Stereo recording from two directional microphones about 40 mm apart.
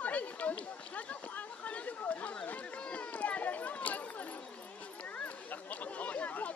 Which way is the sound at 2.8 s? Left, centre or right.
Left.